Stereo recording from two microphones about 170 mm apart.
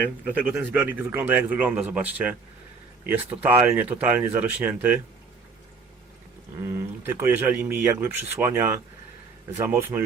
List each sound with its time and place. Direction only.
0.3 s speech: 10° right (ahead or behind)
6.7 s speech: 15° right (ahead or behind)